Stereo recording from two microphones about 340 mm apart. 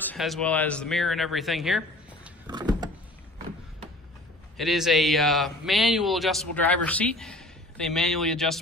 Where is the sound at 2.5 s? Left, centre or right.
Centre.